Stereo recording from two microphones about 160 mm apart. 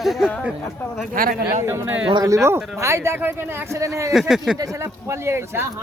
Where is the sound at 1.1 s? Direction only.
60° right (ahead or behind).